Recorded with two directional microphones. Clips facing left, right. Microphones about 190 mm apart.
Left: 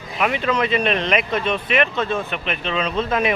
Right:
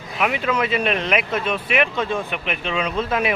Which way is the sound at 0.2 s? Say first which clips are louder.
Left 1 dB; 5° right (ahead or behind).